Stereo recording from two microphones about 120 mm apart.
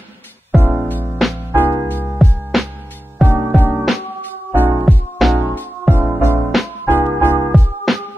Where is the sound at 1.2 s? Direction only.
Centre (ahead or behind).